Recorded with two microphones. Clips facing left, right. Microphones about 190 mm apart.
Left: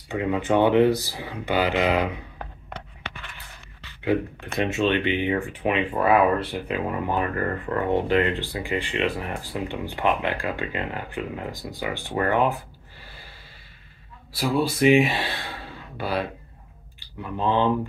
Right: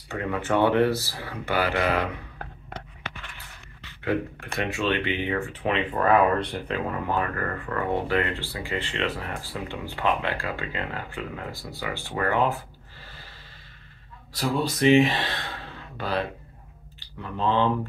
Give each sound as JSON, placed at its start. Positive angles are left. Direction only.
{"t": 0.1, "sound": "speech", "side_deg": 15}
{"t": 4.0, "sound": "speech", "side_deg": 15}
{"t": 6.9, "sound": "speech", "side_deg": 20}
{"t": 14.3, "sound": "speech", "side_deg": 10}